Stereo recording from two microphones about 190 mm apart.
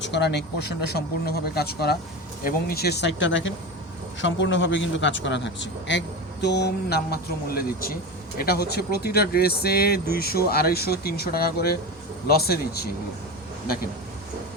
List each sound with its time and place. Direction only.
0.0 s a man's voice: 65° left (ahead or behind)